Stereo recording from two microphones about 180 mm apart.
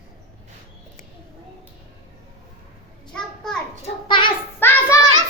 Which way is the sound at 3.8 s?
25° left (ahead or behind).